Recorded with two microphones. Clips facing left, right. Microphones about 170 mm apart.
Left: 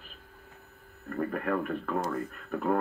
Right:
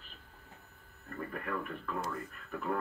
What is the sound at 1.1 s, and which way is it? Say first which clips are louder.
Speech: left 8 dB; 55° left (ahead or behind).